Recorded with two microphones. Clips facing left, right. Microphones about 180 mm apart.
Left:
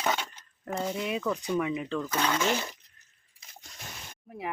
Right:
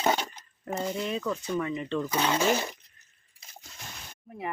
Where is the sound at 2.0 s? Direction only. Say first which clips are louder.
Right 3 dB; 10° right (ahead or behind).